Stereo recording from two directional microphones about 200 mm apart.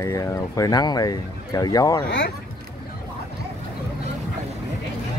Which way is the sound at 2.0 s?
60° left (ahead or behind).